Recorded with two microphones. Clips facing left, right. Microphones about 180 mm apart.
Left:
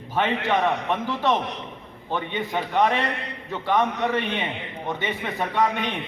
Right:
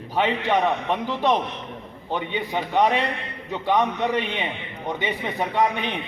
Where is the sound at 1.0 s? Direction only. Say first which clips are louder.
Right 3 dB; 15° right (ahead or behind).